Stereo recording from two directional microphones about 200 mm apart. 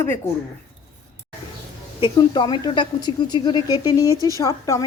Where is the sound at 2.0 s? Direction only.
25° left (ahead or behind).